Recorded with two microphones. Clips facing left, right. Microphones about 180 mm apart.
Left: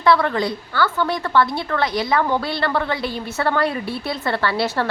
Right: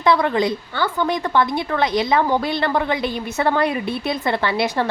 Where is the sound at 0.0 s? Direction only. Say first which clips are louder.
Even; 20° right (ahead or behind).